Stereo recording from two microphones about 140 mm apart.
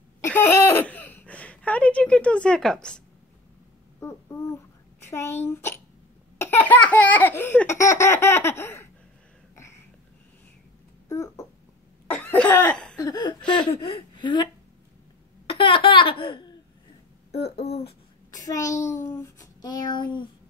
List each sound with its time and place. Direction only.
0.2 s a sound: 15° left (ahead or behind)
4.0 s a sound: 20° left (ahead or behind)
5.1 s child singing: 20° left (ahead or behind)
6.4 s baby laughter: 15° left (ahead or behind)
11.1 s a sound: 20° left (ahead or behind)
12.1 s cough: 10° left (ahead or behind)
12.9 s speech: 25° left (ahead or behind)
13.4 s a sound: 5° left (ahead or behind)
15.7 s laughter: 40° left (ahead or behind)
17.3 s speech: 45° left (ahead or behind)
18.3 s a child's voice: 25° left (ahead or behind)
18.8 s child singing: 20° left (ahead or behind)